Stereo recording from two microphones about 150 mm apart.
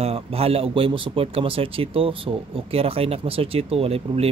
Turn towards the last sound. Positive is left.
turn(degrees=-40)  # may be behind; listen again after turning